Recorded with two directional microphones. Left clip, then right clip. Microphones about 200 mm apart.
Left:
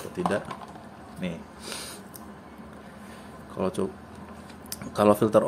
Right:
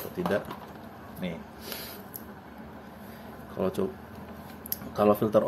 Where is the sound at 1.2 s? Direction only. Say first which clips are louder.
Left 2 dB; 15° left (ahead or behind).